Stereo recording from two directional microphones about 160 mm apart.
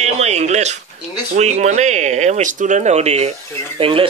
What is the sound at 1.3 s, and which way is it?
Speech, 45° right (ahead or behind).